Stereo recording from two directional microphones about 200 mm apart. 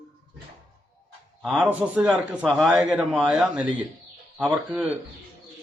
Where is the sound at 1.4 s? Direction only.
5° right (ahead or behind).